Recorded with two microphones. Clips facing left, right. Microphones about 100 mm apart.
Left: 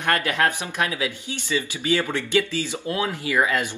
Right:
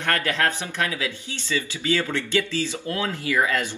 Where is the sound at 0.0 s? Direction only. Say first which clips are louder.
Left 2 dB; 20° left (ahead or behind).